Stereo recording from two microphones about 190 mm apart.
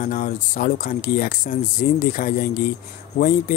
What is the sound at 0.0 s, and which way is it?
Speech, 45° left (ahead or behind).